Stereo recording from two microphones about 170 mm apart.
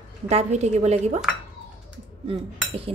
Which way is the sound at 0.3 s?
40° right (ahead or behind).